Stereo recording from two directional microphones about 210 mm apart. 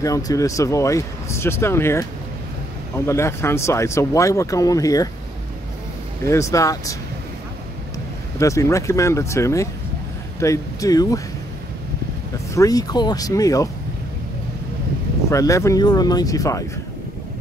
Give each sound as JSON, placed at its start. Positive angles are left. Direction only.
{"t": 0.0, "sound": "speech", "side_deg": 15}
{"t": 3.1, "sound": "speech", "side_deg": 15}
{"t": 6.2, "sound": "speech", "side_deg": 15}
{"t": 8.4, "sound": "speech", "side_deg": 15}
{"t": 12.5, "sound": "speech", "side_deg": 15}
{"t": 15.2, "sound": "speech", "side_deg": 15}